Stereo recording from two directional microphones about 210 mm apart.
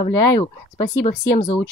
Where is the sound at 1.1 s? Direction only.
35° left (ahead or behind).